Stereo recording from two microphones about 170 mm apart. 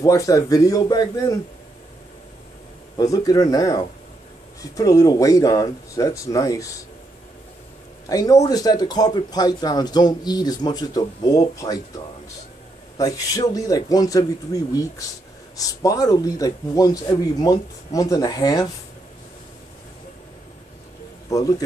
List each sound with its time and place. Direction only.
0.0 s speech: 20° left (ahead or behind)
3.0 s speech: 20° left (ahead or behind)
8.1 s speech: 20° left (ahead or behind)
12.9 s speech: 20° left (ahead or behind)
21.3 s speech: 20° left (ahead or behind)